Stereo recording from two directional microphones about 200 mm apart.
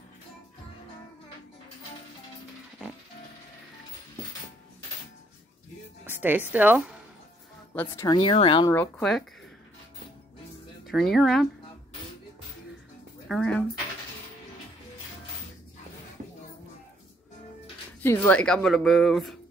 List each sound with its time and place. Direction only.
6.0 s music: 10° right (ahead or behind)
6.5 s speech: 10° right (ahead or behind)
7.7 s speech: 10° left (ahead or behind)
8.2 s speech: 25° left (ahead or behind)
8.7 s speech: 5° left (ahead or behind)
10.9 s speech: centre (ahead or behind)
13.3 s speech: 5° left (ahead or behind)
18.0 s speech: 10° left (ahead or behind)